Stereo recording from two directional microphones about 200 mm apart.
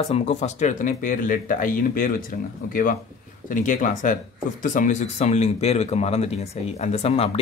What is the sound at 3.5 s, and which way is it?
Speech, 40° left (ahead or behind).